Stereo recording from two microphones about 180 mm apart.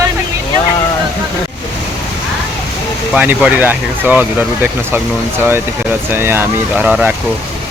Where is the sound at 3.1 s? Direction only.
5° right (ahead or behind).